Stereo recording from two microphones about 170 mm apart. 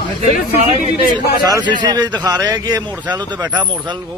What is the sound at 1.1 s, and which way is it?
Speech, 25° right (ahead or behind).